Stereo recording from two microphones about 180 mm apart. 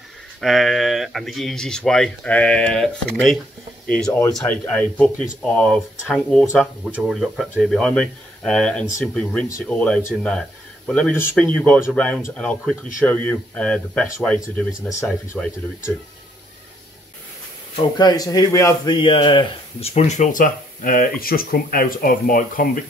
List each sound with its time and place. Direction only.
0.4 s speech: centre (ahead or behind); by 15.0 s 15° left (ahead or behind)
15.0 s speech: 5° left (ahead or behind)
17.7 s speech: 25° left (ahead or behind); by 22.7 s 50° left (ahead or behind)